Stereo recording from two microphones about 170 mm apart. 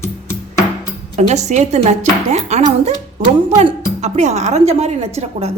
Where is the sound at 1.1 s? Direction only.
40° right (ahead or behind).